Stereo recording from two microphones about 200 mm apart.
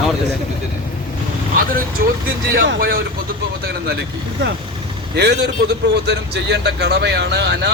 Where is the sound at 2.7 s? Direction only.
50° right (ahead or behind).